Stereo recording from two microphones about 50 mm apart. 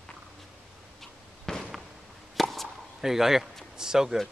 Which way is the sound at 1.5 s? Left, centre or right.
Centre.